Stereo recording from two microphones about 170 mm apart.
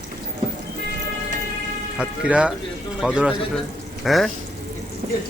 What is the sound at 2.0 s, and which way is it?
Speech, 5° right (ahead or behind).